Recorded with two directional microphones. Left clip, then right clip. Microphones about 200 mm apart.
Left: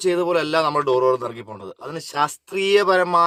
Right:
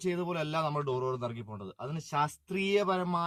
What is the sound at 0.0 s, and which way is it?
Speech, 5° left (ahead or behind).